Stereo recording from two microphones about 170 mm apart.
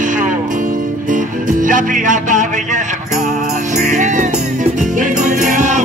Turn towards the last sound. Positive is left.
turn(degrees=-45)  # may be behind; listen again after turning